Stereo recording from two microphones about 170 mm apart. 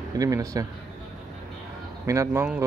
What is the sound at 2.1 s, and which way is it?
Speech, 15° right (ahead or behind).